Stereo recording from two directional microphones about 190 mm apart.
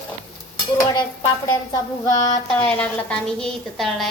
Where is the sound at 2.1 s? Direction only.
20° left (ahead or behind).